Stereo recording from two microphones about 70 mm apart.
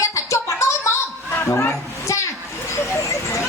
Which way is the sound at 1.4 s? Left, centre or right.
Left.